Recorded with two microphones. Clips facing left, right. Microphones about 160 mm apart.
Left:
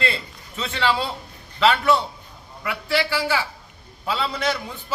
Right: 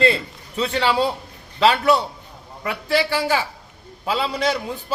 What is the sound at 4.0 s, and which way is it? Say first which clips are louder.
Speech: right 3 dB; 15° right (ahead or behind).